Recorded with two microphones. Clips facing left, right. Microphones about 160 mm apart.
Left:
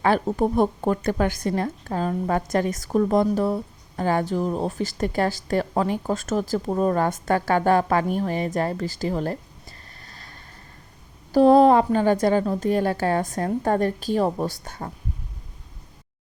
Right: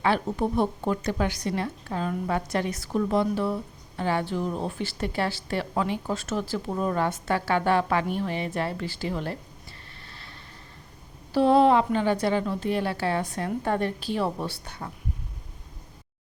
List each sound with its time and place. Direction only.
0.0 s a woman's voice: 45° left (ahead or behind)